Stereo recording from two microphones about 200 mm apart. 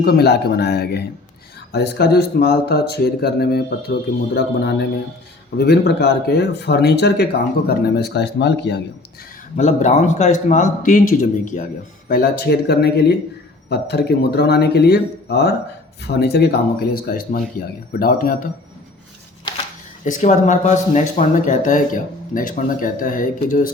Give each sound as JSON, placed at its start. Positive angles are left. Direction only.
{"t": 0.0, "sound": "speech", "side_deg": 50}
{"t": 9.6, "sound": "speech", "side_deg": 35}
{"t": 20.1, "sound": "speech", "side_deg": 40}